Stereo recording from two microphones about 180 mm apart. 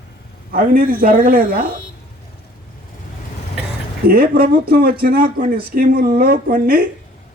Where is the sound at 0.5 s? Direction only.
55° right (ahead or behind).